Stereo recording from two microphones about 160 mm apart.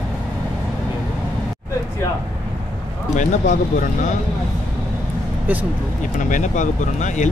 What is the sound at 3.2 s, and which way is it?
Speech, 50° left (ahead or behind).